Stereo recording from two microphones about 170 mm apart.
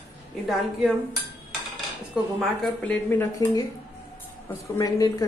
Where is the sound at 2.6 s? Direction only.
10° left (ahead or behind).